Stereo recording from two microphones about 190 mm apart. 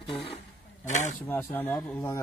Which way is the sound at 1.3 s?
10° left (ahead or behind).